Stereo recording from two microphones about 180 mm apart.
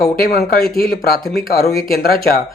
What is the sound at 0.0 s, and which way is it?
Speech, 55° left (ahead or behind).